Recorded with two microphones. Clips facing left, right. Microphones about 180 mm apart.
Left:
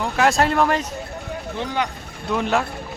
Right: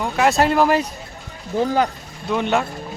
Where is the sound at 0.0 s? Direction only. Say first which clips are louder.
Right 1 dB; centre (ahead or behind).